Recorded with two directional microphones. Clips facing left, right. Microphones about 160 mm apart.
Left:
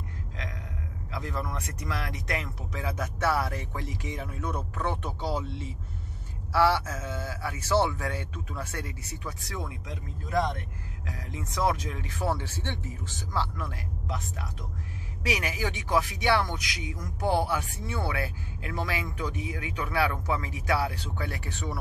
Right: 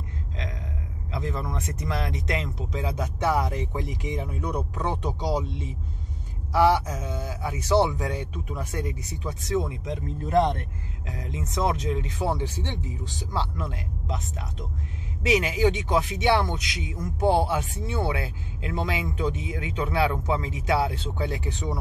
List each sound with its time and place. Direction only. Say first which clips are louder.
1.1 s speech: right 3 dB; 25° right (ahead or behind)
11.1 s speech: right 4 dB; 20° right (ahead or behind)